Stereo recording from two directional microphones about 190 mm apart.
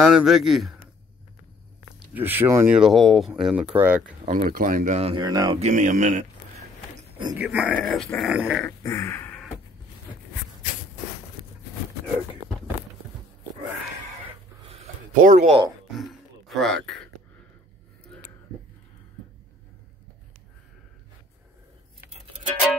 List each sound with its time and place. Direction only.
0.0 s speech: 5° right (ahead or behind)
2.0 s speech: 10° right (ahead or behind)
4.3 s speech: 45° right (ahead or behind); by 5.6 s 20° right (ahead or behind)
5.6 s speech: 40° right (ahead or behind)
7.3 s speech: 5° right (ahead or behind)
8.6 s a sound: 15° left (ahead or behind)
14.7 s a sound: 35° right (ahead or behind)
16.4 s speech: centre (ahead or behind)